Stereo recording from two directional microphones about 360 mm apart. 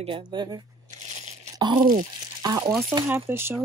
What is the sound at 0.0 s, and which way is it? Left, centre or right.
Speech, centre.